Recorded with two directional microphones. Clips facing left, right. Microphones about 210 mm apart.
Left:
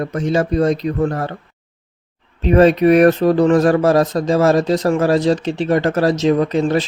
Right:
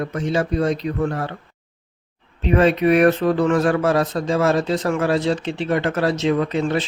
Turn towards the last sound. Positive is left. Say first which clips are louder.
# left 4 dB
turn(degrees=40)  # may be behind; listen again after turning